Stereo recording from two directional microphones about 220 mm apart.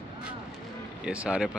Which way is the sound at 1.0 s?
5° right (ahead or behind).